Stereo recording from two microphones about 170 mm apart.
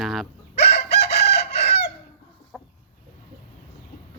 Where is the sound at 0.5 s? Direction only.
75° left (ahead or behind).